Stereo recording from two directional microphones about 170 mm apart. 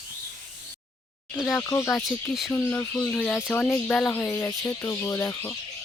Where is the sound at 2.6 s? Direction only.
15° left (ahead or behind).